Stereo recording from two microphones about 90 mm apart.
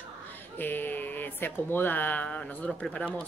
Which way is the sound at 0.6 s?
20° left (ahead or behind).